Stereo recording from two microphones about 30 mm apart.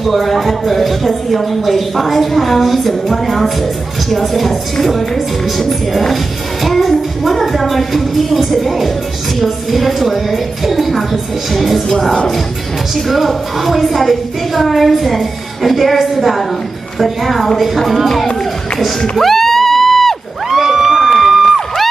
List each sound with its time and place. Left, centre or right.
0.0 s speech: centre
11.9 s speech: centre
12.9 s speech: centre
19.1 s music: centre
20.4 s a sound: centre
21.1 s music: centre